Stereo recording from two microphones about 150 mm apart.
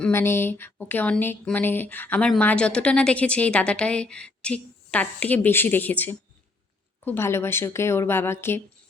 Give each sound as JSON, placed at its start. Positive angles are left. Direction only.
{"t": 0.0, "sound": "a woman's voice", "side_deg": 15}